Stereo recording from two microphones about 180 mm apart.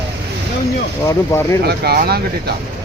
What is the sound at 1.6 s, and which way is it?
Speech, 60° right (ahead or behind).